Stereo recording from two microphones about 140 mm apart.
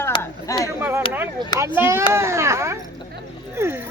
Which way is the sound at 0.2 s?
25° left (ahead or behind).